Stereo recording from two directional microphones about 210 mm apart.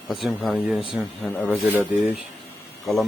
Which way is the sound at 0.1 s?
Centre (ahead or behind).